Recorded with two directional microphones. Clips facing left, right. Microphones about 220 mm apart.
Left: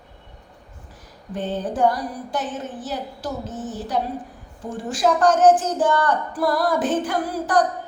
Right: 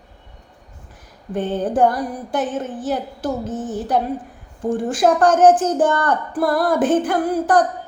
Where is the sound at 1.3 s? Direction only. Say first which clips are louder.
Right 5 dB; 50° right (ahead or behind).